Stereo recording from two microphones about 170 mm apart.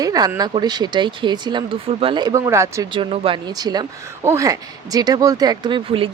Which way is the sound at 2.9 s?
30° right (ahead or behind).